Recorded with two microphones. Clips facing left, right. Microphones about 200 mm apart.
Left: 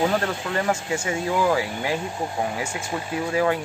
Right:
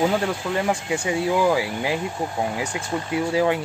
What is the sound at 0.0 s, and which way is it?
Speech, 15° right (ahead or behind).